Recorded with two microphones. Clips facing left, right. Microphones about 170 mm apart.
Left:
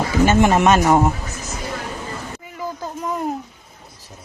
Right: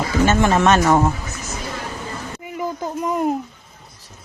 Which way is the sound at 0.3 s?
15° left (ahead or behind).